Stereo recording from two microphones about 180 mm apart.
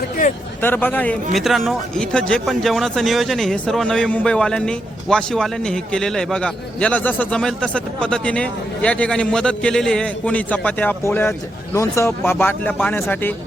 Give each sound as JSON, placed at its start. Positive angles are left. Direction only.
{"t": 0.2, "sound": "speech", "side_deg": 50}
{"t": 0.6, "sound": "speech", "side_deg": 10}